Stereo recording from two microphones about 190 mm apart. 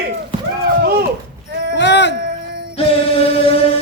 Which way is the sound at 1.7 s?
65° left (ahead or behind).